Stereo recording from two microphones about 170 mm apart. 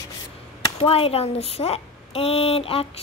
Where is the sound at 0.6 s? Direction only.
30° left (ahead or behind).